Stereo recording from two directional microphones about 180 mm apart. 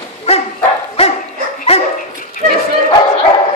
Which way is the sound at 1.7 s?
35° left (ahead or behind).